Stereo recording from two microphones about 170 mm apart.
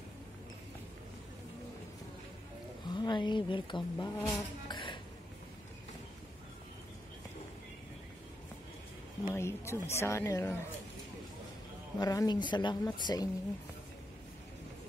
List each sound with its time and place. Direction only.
2.9 s speech: 25° left (ahead or behind)
9.3 s a woman's voice: 15° left (ahead or behind)
12.0 s speech: 25° left (ahead or behind)